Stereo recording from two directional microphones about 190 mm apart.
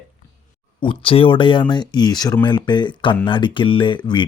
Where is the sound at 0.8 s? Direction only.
30° left (ahead or behind).